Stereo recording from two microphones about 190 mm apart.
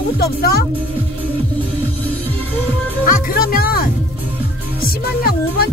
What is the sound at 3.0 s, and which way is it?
Speech, 50° left (ahead or behind).